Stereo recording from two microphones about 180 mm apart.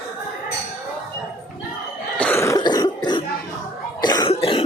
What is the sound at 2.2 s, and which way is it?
Cough, 10° left (ahead or behind).